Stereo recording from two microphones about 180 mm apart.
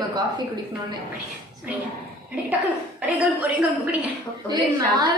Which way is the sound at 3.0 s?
10° right (ahead or behind).